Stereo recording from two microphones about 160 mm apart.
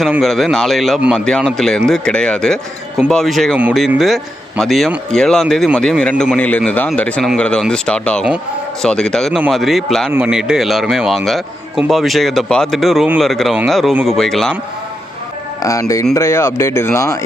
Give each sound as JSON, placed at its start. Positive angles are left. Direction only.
{"t": 0.0, "sound": "speech", "side_deg": 0}
{"t": 15.6, "sound": "speech", "side_deg": 20}